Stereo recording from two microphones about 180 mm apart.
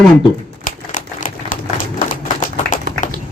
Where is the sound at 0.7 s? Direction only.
45° left (ahead or behind).